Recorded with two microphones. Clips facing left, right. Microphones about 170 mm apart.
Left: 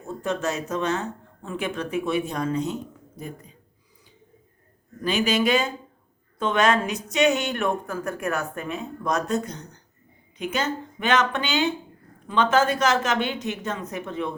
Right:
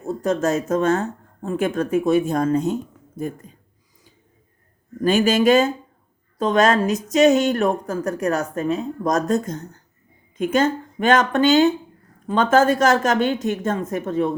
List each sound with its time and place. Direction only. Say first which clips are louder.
0.0 s speech: right 6 dB; 40° right (ahead or behind)
5.0 s a woman's voice: right 6 dB; 45° right (ahead or behind)